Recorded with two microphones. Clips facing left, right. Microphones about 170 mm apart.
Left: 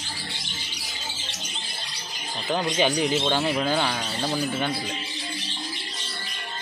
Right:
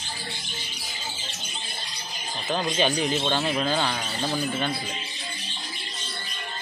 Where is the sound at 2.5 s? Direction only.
15° left (ahead or behind).